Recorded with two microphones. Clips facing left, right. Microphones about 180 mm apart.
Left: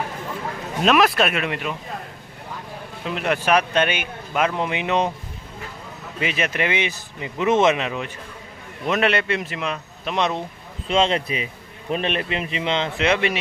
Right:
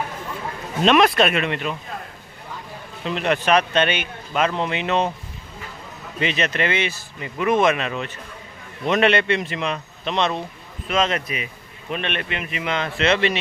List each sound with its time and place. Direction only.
0.8 s a man's voice: 5° left (ahead or behind)
3.1 s speech: 10° left (ahead or behind)
6.1 s speech: 10° left (ahead or behind)
8.8 s a man's voice: 5° left (ahead or behind)
10.9 s speech: 30° left (ahead or behind); by 13.4 s 10° left (ahead or behind)